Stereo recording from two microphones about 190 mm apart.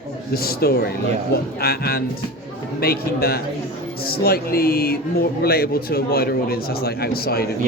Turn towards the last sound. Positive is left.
turn(degrees=55)  # may be behind; listen again after turning